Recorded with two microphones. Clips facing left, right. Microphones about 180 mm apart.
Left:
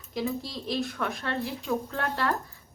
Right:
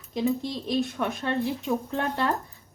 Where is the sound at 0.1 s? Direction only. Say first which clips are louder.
Right 5 dB; 20° right (ahead or behind).